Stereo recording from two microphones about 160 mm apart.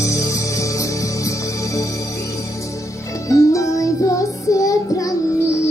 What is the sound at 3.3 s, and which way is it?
Music, 20° left (ahead or behind).